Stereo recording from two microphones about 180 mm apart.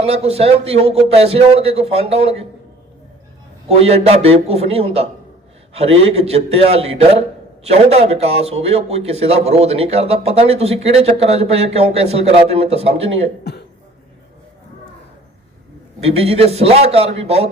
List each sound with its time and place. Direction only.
0.0 s a man's voice: 35° right (ahead or behind)
3.7 s a man's voice: 35° right (ahead or behind)
16.0 s a man's voice: 35° right (ahead or behind)